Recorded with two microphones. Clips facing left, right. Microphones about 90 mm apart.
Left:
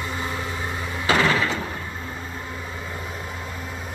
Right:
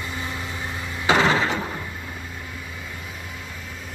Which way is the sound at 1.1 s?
25° right (ahead or behind).